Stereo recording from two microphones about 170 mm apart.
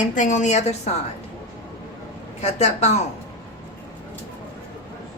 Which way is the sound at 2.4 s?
40° left (ahead or behind).